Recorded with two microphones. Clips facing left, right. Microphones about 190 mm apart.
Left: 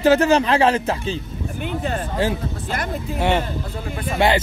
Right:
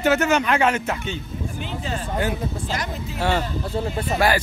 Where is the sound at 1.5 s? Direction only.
55° left (ahead or behind).